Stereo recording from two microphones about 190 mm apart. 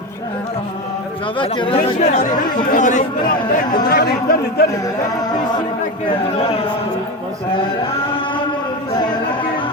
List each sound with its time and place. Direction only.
1.4 s speech: 25° left (ahead or behind); by 4.6 s 55° left (ahead or behind)